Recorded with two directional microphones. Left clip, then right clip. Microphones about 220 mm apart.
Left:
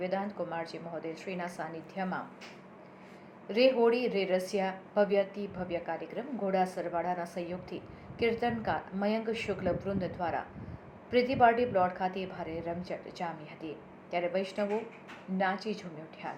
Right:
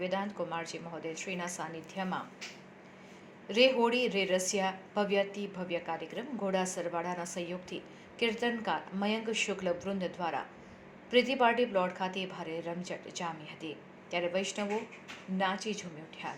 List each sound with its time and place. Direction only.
0.0 s a woman's voice: 25° right (ahead or behind)
3.4 s a woman's voice: 25° right (ahead or behind)